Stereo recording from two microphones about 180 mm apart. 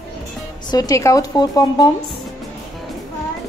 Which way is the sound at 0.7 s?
20° left (ahead or behind).